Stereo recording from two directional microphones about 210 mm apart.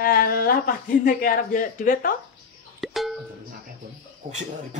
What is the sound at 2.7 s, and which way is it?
Music, centre (ahead or behind).